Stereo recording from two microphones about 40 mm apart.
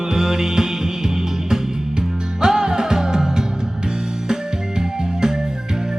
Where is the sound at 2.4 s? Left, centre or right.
Centre.